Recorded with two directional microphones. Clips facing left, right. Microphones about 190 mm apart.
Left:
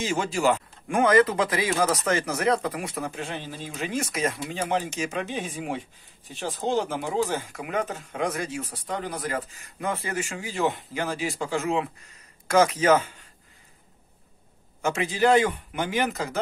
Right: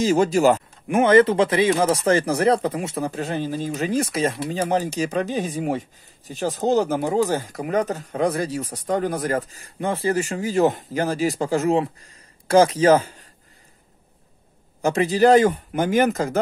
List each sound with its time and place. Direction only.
0.0 s speech: 40° right (ahead or behind)
0.8 s speech: 25° right (ahead or behind)
14.8 s speech: 35° right (ahead or behind)